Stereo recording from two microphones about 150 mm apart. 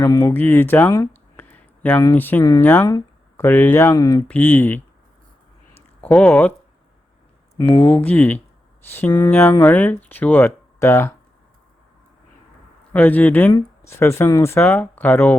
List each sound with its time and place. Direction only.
0.0 s speech: 20° left (ahead or behind)
2.4 s speech: 25° left (ahead or behind)
4.3 s speech: 10° left (ahead or behind)
5.7 s a sound: 10° left (ahead or behind)
7.8 s speech: 5° left (ahead or behind)
12.9 s speech: 10° left (ahead or behind)
13.5 s speech: 20° left (ahead or behind)